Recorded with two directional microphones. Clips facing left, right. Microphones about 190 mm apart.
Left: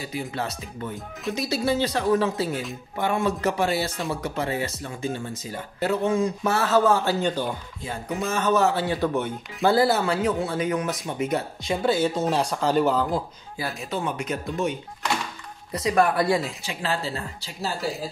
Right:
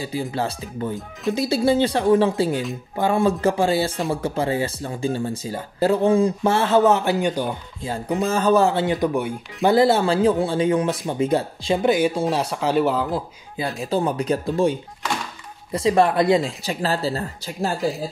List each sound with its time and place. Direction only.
0.3 s speech: 30° right (ahead or behind); by 7.4 s 15° right (ahead or behind)
7.8 s speech: 30° right (ahead or behind); by 13.2 s 5° right (ahead or behind)
13.8 s speech: 35° right (ahead or behind)
16.6 s speech: 40° right (ahead or behind)